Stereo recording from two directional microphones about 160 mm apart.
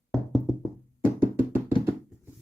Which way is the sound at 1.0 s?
15° right (ahead or behind).